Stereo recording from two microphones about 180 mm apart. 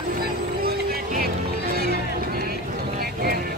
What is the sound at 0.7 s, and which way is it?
Music, 55° right (ahead or behind).